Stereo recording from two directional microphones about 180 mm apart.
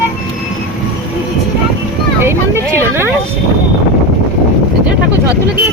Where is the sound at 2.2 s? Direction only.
15° right (ahead or behind).